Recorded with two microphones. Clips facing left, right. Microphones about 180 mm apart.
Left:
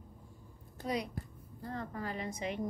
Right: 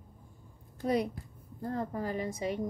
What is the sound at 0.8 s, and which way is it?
A woman's voice, 55° right (ahead or behind).